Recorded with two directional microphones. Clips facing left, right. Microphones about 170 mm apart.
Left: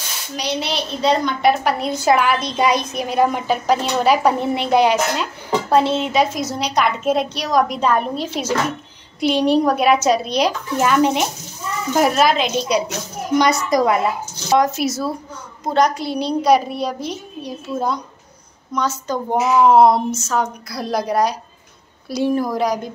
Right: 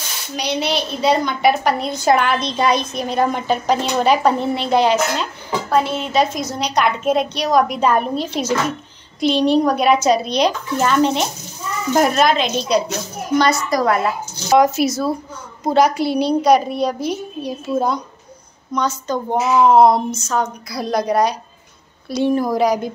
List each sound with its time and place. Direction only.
0.4 s a woman's voice: centre (ahead or behind)
5.7 s a woman's voice: 30° left (ahead or behind)
6.1 s a woman's voice: 5° left (ahead or behind)
14.5 s a woman's voice: 5° right (ahead or behind)